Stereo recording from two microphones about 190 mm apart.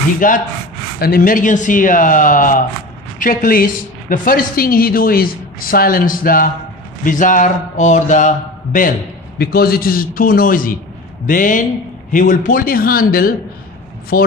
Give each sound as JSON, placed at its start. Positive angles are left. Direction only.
{"t": 0.2, "sound": "a woman's voice", "side_deg": 45}